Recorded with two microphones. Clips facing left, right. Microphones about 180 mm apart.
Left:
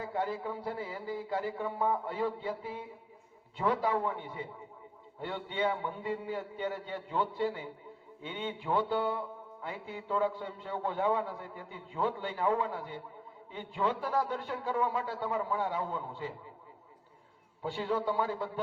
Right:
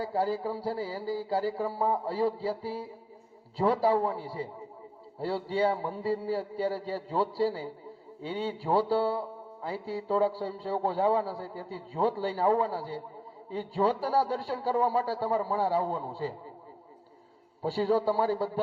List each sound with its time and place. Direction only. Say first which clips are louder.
0.0 s music: right 5 dB; 35° right (ahead or behind)
17.6 s music: right 6 dB; 35° right (ahead or behind)